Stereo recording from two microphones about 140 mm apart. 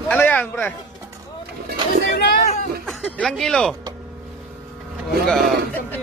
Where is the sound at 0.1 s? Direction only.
15° left (ahead or behind).